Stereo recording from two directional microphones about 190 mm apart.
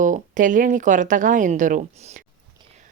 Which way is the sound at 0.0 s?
45° right (ahead or behind).